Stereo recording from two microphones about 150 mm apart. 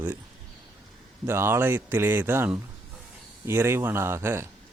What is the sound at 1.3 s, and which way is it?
Speech, 15° right (ahead or behind).